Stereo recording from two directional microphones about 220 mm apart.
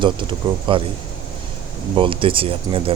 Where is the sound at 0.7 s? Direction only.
25° right (ahead or behind).